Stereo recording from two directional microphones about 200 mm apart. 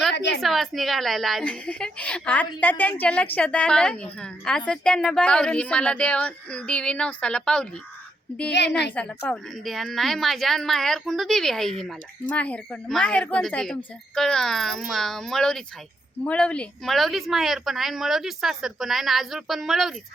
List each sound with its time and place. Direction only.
0.1 s a woman's voice: 60° left (ahead or behind)
0.4 s a woman's voice: centre (ahead or behind)
8.5 s a woman's voice: 60° left (ahead or behind)
9.0 s a woman's voice: 5° left (ahead or behind)